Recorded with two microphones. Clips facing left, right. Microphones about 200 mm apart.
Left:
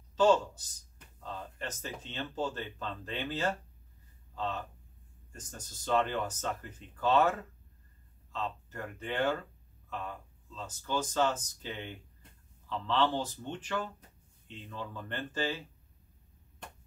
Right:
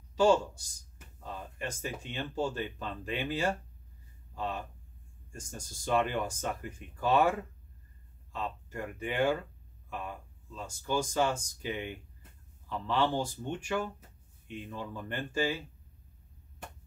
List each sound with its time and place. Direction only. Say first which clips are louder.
0.1 s speech: even; 10° right (ahead or behind)